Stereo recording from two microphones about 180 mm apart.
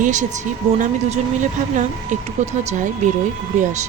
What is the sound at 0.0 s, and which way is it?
Speech, 45° right (ahead or behind).